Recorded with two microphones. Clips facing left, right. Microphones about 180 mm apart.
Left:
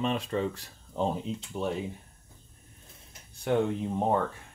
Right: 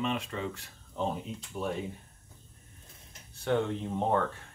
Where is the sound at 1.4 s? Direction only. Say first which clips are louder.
Left 2 dB; 25° left (ahead or behind).